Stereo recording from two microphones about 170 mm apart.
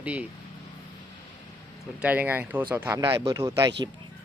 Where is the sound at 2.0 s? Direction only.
10° right (ahead or behind).